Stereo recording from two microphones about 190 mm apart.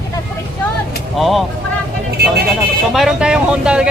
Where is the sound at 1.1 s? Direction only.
Centre (ahead or behind).